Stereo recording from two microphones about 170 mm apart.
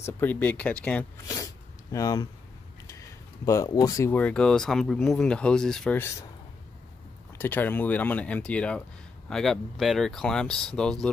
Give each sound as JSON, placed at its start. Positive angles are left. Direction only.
{"t": 0.0, "sound": "speech", "side_deg": 10}
{"t": 1.2, "sound": "sneeze", "side_deg": 20}
{"t": 3.4, "sound": "speech", "side_deg": 20}
{"t": 7.3, "sound": "speech", "side_deg": 10}